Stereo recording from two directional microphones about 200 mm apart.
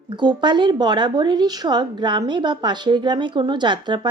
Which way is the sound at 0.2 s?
20° right (ahead or behind).